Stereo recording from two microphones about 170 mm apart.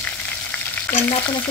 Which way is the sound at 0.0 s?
10° left (ahead or behind).